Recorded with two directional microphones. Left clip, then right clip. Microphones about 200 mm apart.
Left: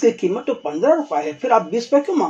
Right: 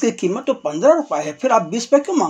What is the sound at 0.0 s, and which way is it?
Speech, 30° right (ahead or behind).